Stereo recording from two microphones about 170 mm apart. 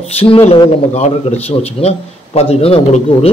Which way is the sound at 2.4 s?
35° left (ahead or behind).